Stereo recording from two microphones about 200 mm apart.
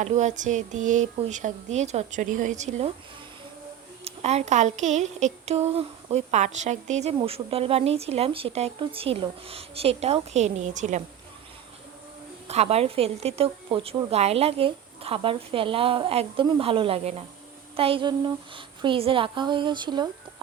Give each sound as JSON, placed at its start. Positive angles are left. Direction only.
{"t": 0.0, "sound": "speech", "side_deg": -35}
{"t": 4.0, "sound": "a woman's voice", "side_deg": -30}
{"t": 12.5, "sound": "a woman's voice", "side_deg": -30}